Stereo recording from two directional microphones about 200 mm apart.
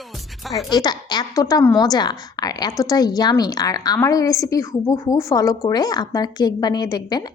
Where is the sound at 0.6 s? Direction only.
20° left (ahead or behind).